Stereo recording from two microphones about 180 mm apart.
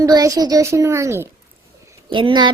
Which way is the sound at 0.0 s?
20° right (ahead or behind).